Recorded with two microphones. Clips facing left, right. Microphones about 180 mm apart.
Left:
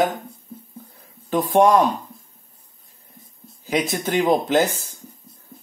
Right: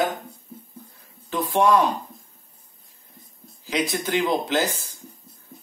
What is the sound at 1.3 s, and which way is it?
Speech, 45° left (ahead or behind).